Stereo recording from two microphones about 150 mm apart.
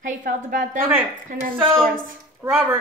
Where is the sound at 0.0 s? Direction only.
65° right (ahead or behind).